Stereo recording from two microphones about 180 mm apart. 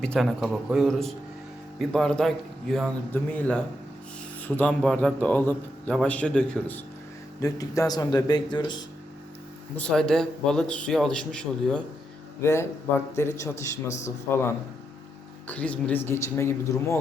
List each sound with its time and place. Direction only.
0.0 s a man's voice: 5° left (ahead or behind)
7.3 s speech: 20° left (ahead or behind)
9.7 s a man's voice: 5° left (ahead or behind)
12.4 s speech: 15° left (ahead or behind)